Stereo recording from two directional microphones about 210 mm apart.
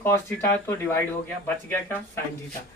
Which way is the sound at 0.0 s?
10° left (ahead or behind).